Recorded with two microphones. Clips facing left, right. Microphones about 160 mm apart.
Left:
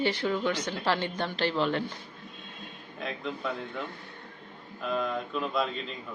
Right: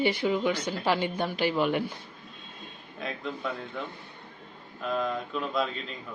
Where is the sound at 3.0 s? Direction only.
Centre (ahead or behind).